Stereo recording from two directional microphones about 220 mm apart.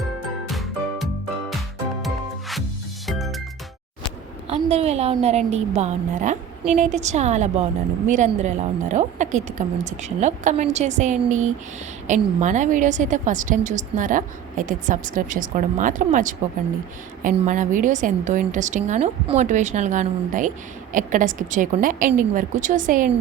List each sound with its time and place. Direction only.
0.0 s music: centre (ahead or behind)
4.4 s a woman's voice: 30° right (ahead or behind)